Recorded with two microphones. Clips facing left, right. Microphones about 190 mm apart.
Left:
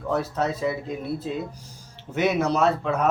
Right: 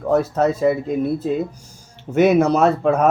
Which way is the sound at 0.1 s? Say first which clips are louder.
Right 8 dB; 45° right (ahead or behind).